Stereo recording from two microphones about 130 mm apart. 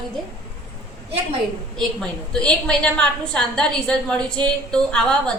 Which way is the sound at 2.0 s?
5° left (ahead or behind).